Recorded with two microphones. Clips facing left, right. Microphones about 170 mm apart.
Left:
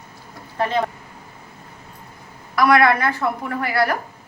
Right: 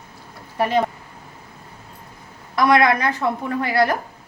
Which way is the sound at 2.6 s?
20° right (ahead or behind).